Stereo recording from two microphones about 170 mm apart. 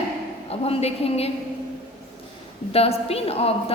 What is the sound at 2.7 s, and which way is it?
A woman's voice, 35° left (ahead or behind).